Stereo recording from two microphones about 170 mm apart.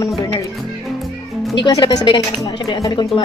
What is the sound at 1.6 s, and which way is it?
Speech, 25° left (ahead or behind).